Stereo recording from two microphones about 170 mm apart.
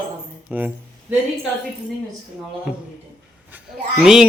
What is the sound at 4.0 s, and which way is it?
Speech, 5° right (ahead or behind).